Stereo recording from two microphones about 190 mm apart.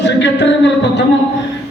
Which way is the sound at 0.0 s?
70° left (ahead or behind).